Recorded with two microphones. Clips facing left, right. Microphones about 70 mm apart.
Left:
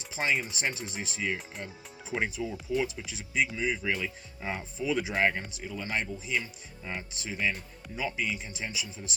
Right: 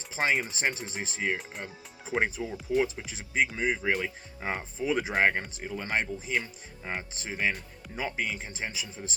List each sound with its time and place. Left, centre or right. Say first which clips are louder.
0.1 s speech: right 2 dB; right
3.1 s speech: right 2 dB; right